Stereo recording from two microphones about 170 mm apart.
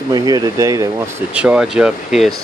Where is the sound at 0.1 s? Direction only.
25° right (ahead or behind).